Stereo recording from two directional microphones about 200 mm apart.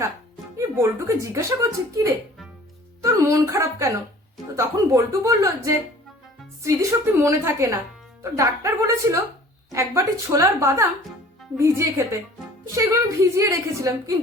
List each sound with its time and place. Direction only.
0.5 s speech: 15° right (ahead or behind)
3.0 s speech: 15° right (ahead or behind)